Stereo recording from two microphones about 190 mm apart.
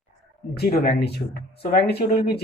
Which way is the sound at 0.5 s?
55° left (ahead or behind).